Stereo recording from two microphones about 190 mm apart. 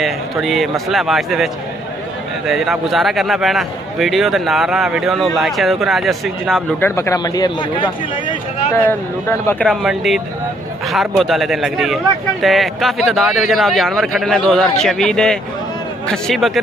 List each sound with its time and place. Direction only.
0.0 s a man's voice: centre (ahead or behind)
7.0 s speech: 20° left (ahead or behind)
9.7 s a man's voice: centre (ahead or behind)